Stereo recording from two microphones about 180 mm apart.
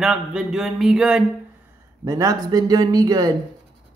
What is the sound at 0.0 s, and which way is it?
Music, 5° right (ahead or behind).